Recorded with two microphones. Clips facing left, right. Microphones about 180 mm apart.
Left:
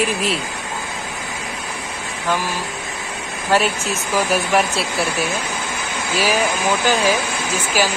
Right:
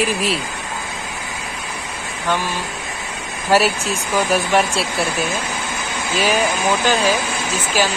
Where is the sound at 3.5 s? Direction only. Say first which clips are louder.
Right 2 dB; 5° right (ahead or behind).